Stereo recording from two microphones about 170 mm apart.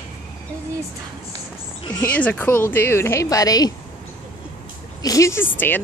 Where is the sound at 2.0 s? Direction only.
10° left (ahead or behind).